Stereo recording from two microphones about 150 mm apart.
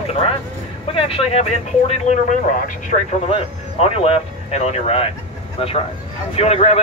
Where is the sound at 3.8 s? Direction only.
40° left (ahead or behind).